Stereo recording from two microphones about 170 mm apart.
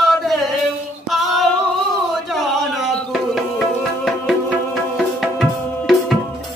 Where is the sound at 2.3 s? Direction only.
Centre (ahead or behind).